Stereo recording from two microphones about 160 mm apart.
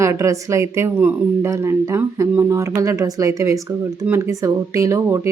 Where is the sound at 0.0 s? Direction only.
20° right (ahead or behind).